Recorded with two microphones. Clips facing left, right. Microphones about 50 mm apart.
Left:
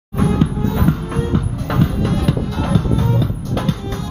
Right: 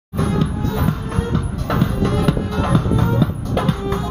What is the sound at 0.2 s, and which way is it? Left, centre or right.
Music, centre.